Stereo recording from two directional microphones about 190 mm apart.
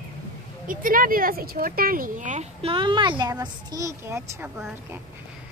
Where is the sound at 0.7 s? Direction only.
50° right (ahead or behind).